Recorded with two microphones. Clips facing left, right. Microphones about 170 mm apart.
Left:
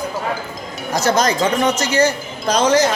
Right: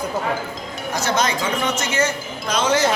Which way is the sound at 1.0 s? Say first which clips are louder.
Left 5 dB; 40° left (ahead or behind).